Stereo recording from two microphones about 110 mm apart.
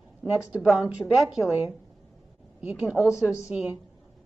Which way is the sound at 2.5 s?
10° right (ahead or behind).